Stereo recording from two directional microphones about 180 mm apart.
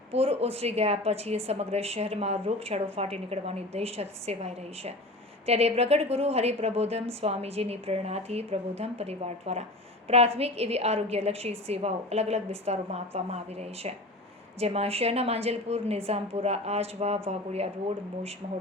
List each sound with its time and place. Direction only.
0.1 s a woman's voice: 35° right (ahead or behind)